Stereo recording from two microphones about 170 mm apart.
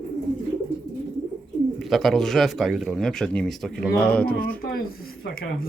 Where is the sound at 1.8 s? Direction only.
Centre (ahead or behind).